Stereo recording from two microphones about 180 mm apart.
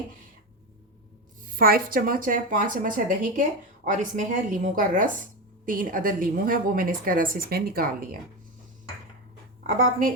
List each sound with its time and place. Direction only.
1.5 s speech: 55° right (ahead or behind)
9.6 s speech: 50° right (ahead or behind)